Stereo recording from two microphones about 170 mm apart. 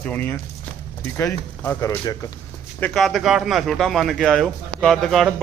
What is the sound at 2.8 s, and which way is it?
A man's voice, centre (ahead or behind).